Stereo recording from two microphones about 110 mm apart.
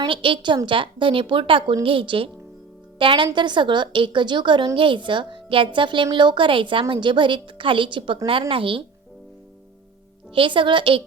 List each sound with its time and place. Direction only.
0.1 s a woman's voice: 50° right (ahead or behind)
10.3 s a woman's voice: 50° right (ahead or behind)